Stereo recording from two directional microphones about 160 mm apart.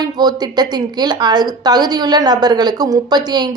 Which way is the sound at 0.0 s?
25° right (ahead or behind).